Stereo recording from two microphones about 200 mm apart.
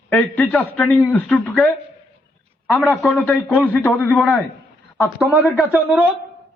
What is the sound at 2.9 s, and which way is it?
A man's voice, 5° left (ahead or behind).